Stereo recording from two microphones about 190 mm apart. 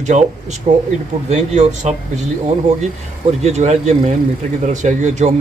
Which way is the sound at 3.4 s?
35° right (ahead or behind).